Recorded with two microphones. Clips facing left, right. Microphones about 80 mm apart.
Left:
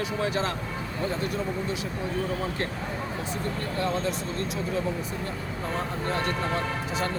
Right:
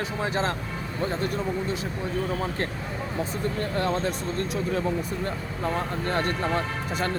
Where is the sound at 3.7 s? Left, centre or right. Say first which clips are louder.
Even; right.